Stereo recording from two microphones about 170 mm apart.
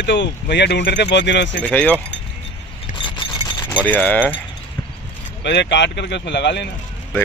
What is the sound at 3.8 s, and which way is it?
Speech, 10° left (ahead or behind).